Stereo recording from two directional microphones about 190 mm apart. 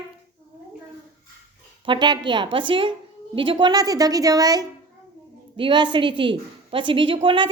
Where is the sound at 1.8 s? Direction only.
25° right (ahead or behind).